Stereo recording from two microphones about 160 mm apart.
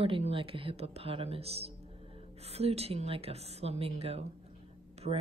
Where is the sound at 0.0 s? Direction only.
35° right (ahead or behind).